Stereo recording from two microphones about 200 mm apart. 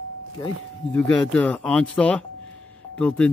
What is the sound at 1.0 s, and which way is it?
Speech, 5° left (ahead or behind).